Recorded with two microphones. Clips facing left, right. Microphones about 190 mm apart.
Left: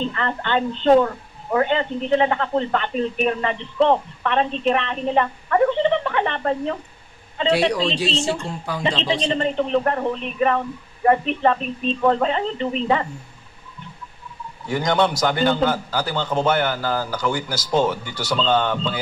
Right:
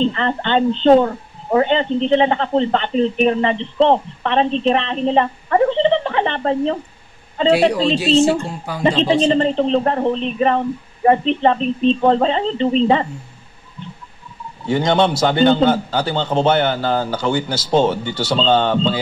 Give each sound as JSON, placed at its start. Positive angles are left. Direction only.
{"t": 0.0, "sound": "speech", "side_deg": -25}
{"t": 7.7, "sound": "speech", "side_deg": -5}
{"t": 9.0, "sound": "speech", "side_deg": -30}
{"t": 14.7, "sound": "speech", "side_deg": -25}